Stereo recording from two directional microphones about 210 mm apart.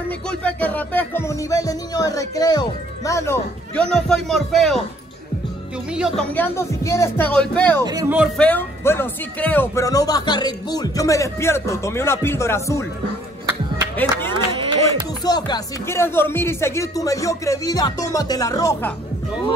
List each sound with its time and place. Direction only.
0.3 s music: 5° left (ahead or behind)
5.9 s speech: centre (ahead or behind)
6.3 s speech: 10° left (ahead or behind)
7.8 s speech: 20° right (ahead or behind)
8.4 s speech: 10° left (ahead or behind)
14.3 s a sound: 20° right (ahead or behind)
15.2 s speech: 20° left (ahead or behind)